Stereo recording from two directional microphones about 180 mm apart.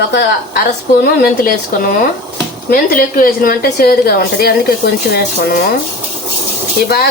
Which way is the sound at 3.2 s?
55° left (ahead or behind).